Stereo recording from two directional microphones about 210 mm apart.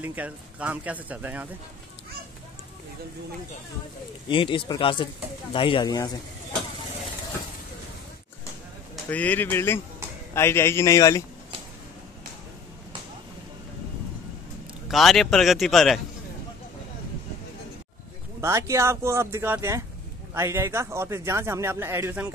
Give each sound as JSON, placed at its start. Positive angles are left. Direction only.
{"t": 0.0, "sound": "speech", "side_deg": -10}
{"t": 4.3, "sound": "speech", "side_deg": 25}
{"t": 8.9, "sound": "a man's voice", "side_deg": 5}
{"t": 14.9, "sound": "speech", "side_deg": 0}
{"t": 18.4, "sound": "speech", "side_deg": -15}